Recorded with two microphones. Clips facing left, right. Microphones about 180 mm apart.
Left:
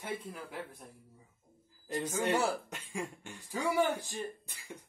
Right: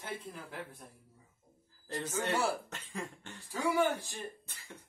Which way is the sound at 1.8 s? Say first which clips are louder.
Left 3 dB; 10° left (ahead or behind).